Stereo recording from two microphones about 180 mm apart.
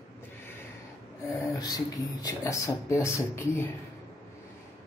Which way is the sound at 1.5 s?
20° left (ahead or behind).